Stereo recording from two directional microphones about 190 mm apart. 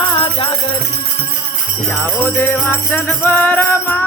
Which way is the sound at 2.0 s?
10° left (ahead or behind).